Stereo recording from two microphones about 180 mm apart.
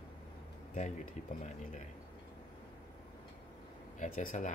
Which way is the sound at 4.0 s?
45° left (ahead or behind).